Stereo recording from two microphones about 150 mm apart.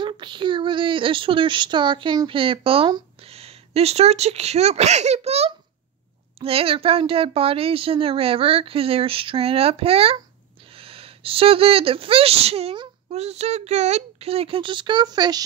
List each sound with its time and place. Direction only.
0.0 s speech: 30° right (ahead or behind)